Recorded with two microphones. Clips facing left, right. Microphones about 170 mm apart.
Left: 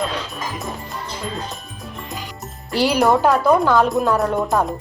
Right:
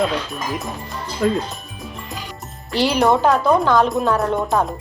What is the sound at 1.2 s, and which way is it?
Speech, 60° right (ahead or behind).